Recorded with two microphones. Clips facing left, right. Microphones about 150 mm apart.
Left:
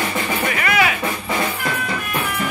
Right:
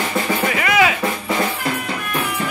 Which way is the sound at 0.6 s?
20° right (ahead or behind).